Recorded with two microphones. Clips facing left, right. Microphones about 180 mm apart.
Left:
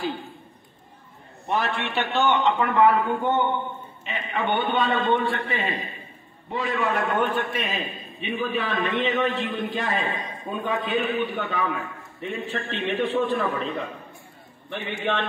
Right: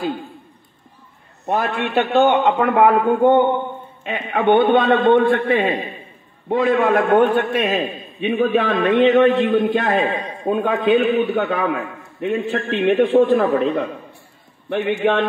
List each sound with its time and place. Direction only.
1.4 s a man's voice: 50° right (ahead or behind)